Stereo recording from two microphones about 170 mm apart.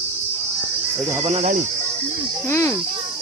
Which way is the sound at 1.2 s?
40° right (ahead or behind).